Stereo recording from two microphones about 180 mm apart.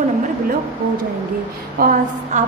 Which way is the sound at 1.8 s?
50° right (ahead or behind).